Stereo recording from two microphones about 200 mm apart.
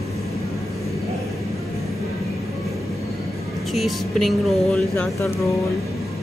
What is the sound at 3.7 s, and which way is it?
Speech, centre (ahead or behind).